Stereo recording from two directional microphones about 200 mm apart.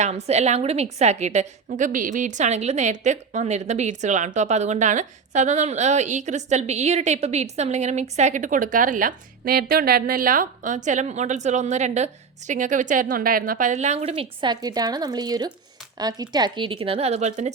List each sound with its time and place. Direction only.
0.0 s a woman's voice: 35° right (ahead or behind)